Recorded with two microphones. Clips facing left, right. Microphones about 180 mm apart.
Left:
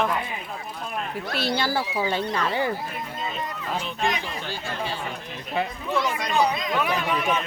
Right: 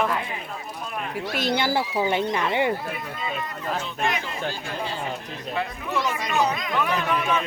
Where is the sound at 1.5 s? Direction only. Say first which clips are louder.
Right 3 dB; 20° right (ahead or behind).